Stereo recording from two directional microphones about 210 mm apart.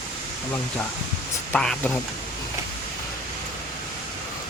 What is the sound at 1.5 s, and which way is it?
Speech, 5° left (ahead or behind).